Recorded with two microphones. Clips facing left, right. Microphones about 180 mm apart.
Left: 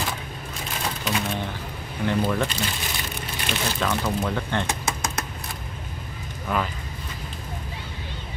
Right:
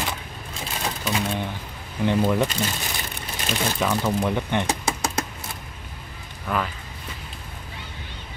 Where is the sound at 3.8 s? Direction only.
15° right (ahead or behind).